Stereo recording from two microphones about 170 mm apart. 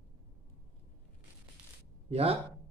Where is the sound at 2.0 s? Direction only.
35° right (ahead or behind).